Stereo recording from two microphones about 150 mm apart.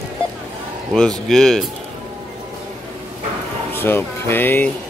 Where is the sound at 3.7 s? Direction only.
15° left (ahead or behind).